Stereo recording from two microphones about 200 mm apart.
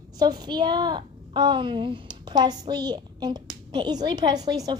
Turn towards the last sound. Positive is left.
turn(degrees=-20)  # may be behind; listen again after turning